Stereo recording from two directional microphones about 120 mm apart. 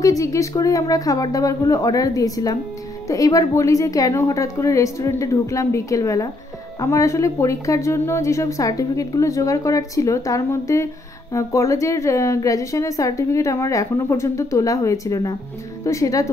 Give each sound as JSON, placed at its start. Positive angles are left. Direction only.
{"t": 0.0, "sound": "a woman's voice", "side_deg": 30}